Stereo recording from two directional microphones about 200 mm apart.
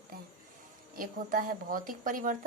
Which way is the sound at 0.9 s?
45° right (ahead or behind).